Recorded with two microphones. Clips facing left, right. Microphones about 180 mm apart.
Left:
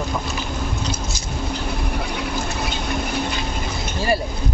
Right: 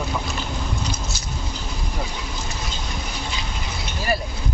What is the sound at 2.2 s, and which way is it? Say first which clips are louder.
Fill: left 7 dB; 65° left (ahead or behind).